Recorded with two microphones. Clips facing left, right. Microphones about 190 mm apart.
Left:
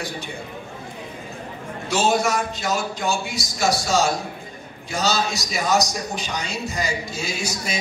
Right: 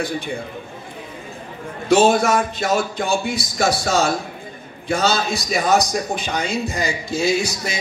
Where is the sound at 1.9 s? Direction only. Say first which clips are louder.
Right 6 dB; 55° right (ahead or behind).